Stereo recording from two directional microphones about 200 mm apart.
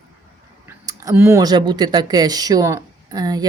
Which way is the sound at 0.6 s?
15° right (ahead or behind).